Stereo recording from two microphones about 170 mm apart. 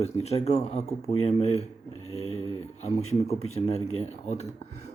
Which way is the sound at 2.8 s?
40° left (ahead or behind).